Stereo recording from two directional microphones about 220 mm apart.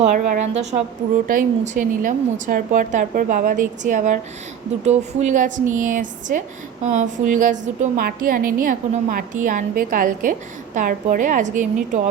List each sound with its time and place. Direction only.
0.0 s a woman's voice: 35° right (ahead or behind)